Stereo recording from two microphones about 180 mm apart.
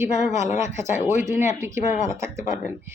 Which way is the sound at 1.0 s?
40° left (ahead or behind).